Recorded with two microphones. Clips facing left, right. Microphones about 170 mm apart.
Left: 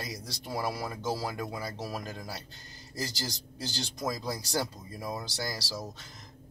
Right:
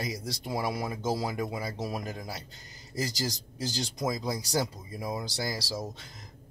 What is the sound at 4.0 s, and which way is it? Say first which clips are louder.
Speech: right 2 dB; 20° right (ahead or behind).